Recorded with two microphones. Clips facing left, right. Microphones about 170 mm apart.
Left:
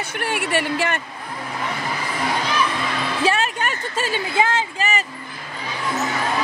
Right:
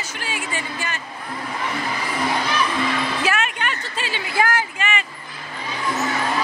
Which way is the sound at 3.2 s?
35° left (ahead or behind).